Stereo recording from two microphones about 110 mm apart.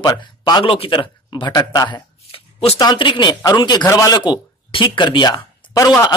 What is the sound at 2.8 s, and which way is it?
Speech, 50° left (ahead or behind).